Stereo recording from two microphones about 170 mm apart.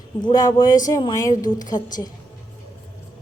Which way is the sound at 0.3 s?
25° left (ahead or behind).